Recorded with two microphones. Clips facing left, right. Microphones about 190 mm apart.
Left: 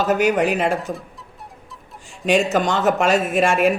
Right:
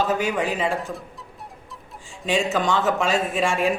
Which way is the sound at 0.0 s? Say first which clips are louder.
Left 5 dB; 75° left (ahead or behind).